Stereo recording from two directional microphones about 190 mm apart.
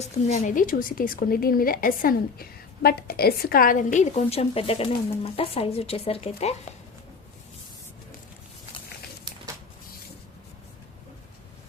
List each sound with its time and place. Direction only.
0.0 s a woman's voice: 40° left (ahead or behind)